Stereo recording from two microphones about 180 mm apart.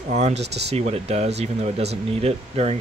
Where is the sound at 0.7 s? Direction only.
35° right (ahead or behind).